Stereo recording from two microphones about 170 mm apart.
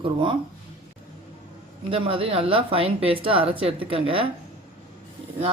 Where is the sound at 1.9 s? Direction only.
35° right (ahead or behind).